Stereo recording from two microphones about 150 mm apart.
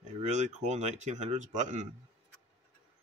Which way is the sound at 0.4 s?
50° right (ahead or behind).